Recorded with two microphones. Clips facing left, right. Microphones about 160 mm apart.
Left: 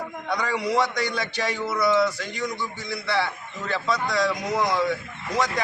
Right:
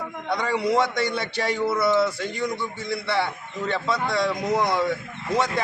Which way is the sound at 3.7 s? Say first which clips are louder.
Even; 25° right (ahead or behind).